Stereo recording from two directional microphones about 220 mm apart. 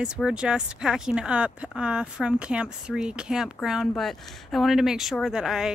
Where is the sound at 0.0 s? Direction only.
5° right (ahead or behind).